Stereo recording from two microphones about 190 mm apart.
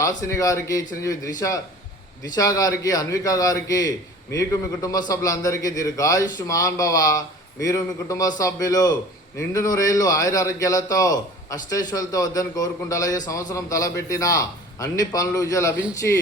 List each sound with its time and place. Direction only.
0.0 s a man's voice: 15° left (ahead or behind)